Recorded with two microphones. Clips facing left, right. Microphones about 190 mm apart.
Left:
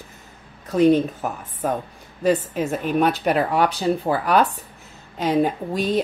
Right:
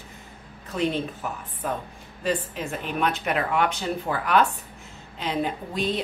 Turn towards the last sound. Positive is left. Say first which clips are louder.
# left 5 dB
turn(degrees=45)  # may be behind; listen again after turning